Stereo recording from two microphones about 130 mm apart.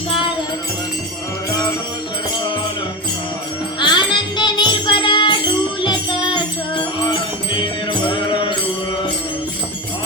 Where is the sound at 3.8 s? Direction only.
35° left (ahead or behind).